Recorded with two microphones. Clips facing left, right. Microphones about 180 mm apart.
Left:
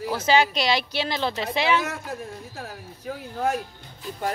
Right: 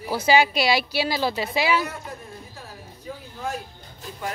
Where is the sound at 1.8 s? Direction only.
90° left; by 3.6 s 70° left (ahead or behind).